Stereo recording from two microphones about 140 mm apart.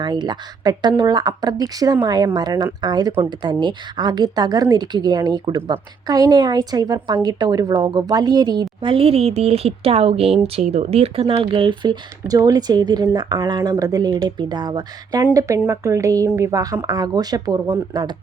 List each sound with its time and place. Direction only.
0.0 s speech: 30° right (ahead or behind)